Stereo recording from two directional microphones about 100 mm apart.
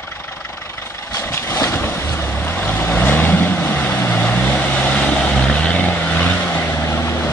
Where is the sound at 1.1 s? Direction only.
25° left (ahead or behind).